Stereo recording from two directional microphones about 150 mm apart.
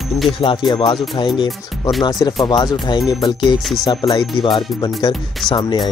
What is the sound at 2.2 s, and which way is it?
Speech, 30° left (ahead or behind).